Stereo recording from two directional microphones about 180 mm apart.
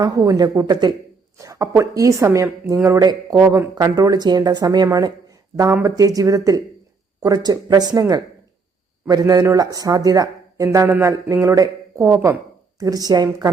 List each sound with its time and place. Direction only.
0.0 s speech: 20° right (ahead or behind)